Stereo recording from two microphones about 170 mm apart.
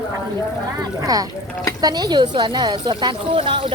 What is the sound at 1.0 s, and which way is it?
Speech, 20° right (ahead or behind).